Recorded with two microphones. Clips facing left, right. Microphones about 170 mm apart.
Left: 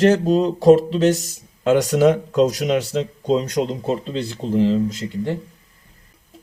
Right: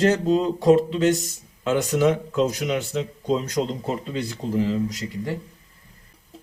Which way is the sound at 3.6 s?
20° left (ahead or behind).